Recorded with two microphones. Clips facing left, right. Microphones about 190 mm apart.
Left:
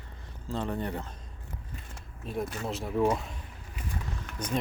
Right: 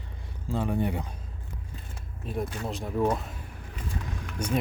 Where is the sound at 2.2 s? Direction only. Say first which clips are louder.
Right 1 dB; centre (ahead or behind).